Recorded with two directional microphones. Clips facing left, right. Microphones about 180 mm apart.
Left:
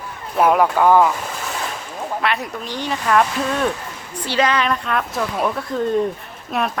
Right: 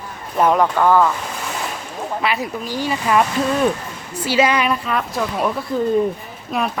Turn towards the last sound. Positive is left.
turn(degrees=0)  # may be behind; listen again after turning